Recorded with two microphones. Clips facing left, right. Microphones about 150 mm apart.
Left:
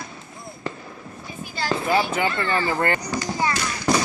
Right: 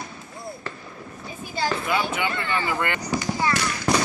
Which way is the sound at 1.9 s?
35° left (ahead or behind).